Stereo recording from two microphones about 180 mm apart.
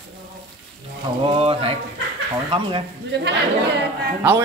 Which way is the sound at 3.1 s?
75° right (ahead or behind).